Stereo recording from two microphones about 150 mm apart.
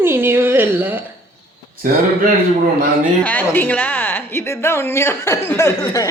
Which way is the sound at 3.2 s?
10° left (ahead or behind).